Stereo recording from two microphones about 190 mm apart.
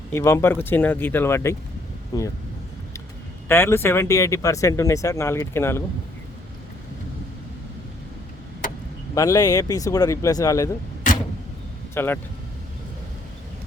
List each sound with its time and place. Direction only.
0.1 s speech: 15° left (ahead or behind)
3.5 s speech: 10° left (ahead or behind)
9.1 s speech: 15° left (ahead or behind)
11.9 s speech: 10° left (ahead or behind)